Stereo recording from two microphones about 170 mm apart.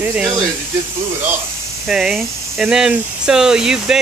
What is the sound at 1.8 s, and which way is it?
Speech, 5° right (ahead or behind).